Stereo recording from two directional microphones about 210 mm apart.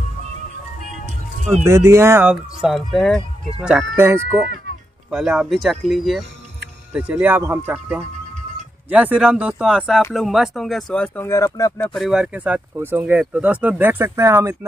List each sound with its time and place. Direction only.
1.6 s speech: 15° right (ahead or behind)
8.0 s music: 35° right (ahead or behind)
8.8 s speech: 5° right (ahead or behind); by 11.9 s 15° left (ahead or behind)
11.9 s speech: centre (ahead or behind)